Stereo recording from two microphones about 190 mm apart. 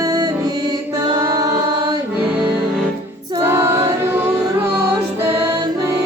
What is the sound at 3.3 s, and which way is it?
Music, 15° right (ahead or behind).